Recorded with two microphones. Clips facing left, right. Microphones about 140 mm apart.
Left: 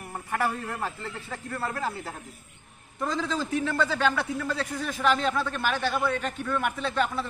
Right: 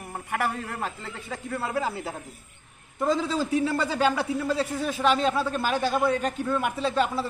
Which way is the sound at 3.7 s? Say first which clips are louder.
Even; 35° right (ahead or behind).